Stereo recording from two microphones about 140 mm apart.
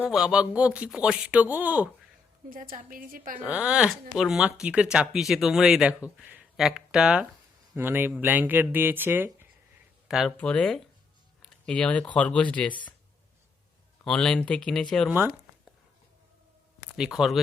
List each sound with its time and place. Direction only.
0.0 s speech: 5° right (ahead or behind)
2.5 s a woman's voice: 85° right
3.4 s speech: 10° right (ahead or behind)
10.1 s speech: centre (ahead or behind)
10.3 s speech: 10° left (ahead or behind)
14.0 s speech: 5° left (ahead or behind)
17.0 s speech: 5° right (ahead or behind)